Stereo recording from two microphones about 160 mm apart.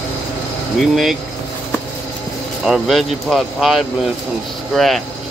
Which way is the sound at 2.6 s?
5° right (ahead or behind).